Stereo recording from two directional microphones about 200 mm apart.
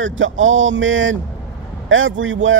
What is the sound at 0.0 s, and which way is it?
Speech, 70° right (ahead or behind).